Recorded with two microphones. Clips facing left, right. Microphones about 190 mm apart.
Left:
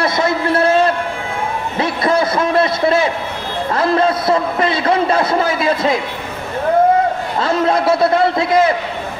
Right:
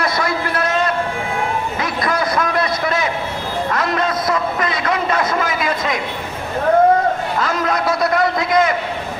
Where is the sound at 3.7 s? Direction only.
30° left (ahead or behind).